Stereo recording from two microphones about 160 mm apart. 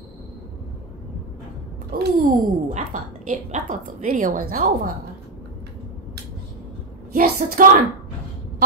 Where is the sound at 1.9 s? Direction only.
70° right (ahead or behind).